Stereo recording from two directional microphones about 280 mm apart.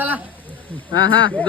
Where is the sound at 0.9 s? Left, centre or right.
Left.